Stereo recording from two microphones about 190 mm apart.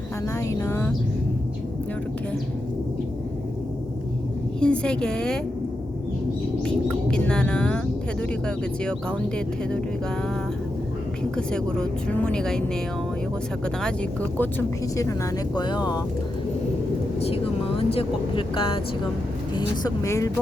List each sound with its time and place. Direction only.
0.3 s speech: 15° left (ahead or behind)
4.6 s speech: 5° left (ahead or behind)
6.8 s speech: 5° left (ahead or behind)
11.2 s speech: 5° left (ahead or behind)
13.8 s speech: 10° left (ahead or behind)
17.2 s speech: 30° left (ahead or behind)